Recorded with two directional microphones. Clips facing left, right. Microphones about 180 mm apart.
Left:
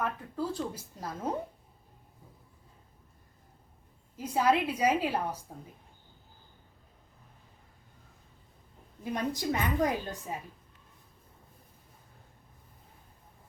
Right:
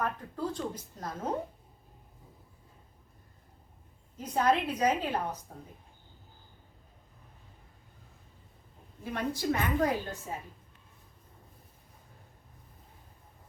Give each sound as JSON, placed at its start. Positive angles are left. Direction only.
{"t": 0.0, "sound": "speech", "side_deg": 5}
{"t": 4.2, "sound": "speech", "side_deg": 10}
{"t": 9.1, "sound": "speech", "side_deg": 15}